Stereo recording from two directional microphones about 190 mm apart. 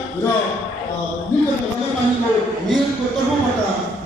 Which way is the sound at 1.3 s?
10° left (ahead or behind).